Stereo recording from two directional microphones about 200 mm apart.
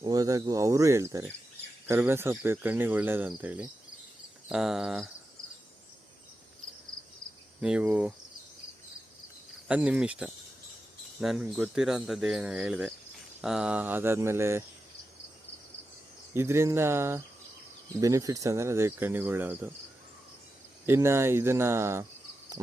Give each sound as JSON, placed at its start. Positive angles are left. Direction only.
{"t": 0.0, "sound": "cricket", "side_deg": -20}
{"t": 4.4, "sound": "speech", "side_deg": 0}
{"t": 7.6, "sound": "cricket", "side_deg": -5}
{"t": 9.6, "sound": "speech", "side_deg": -5}
{"t": 13.4, "sound": "cricket", "side_deg": -5}
{"t": 16.3, "sound": "cricket", "side_deg": -15}
{"t": 20.8, "sound": "cricket", "side_deg": -15}